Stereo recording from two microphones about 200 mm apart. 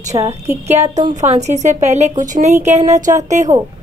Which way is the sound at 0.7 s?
35° right (ahead or behind).